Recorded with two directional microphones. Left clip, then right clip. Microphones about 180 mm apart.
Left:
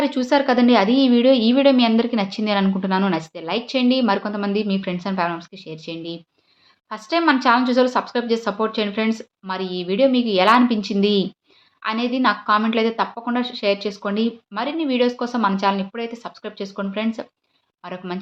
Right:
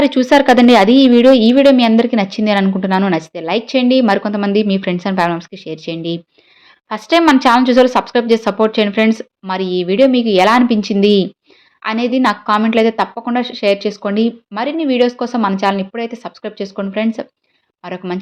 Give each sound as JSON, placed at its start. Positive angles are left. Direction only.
{"t": 0.0, "sound": "a woman's voice", "side_deg": -40}